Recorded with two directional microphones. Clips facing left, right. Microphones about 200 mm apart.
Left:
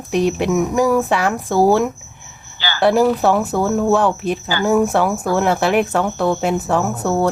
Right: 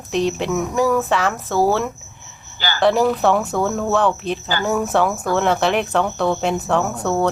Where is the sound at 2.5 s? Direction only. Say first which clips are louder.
Even; 45° right (ahead or behind).